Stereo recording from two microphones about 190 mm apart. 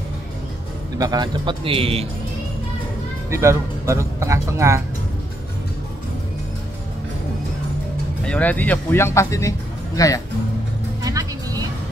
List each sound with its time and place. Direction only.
0.9 s a man's voice: 20° right (ahead or behind)
3.3 s speech: 15° right (ahead or behind)
8.3 s speech: 10° left (ahead or behind)
11.0 s music: 20° right (ahead or behind)